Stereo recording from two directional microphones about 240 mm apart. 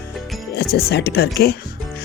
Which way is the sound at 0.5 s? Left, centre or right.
Left.